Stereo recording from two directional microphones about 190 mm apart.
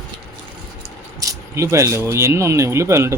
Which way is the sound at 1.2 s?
15° right (ahead or behind).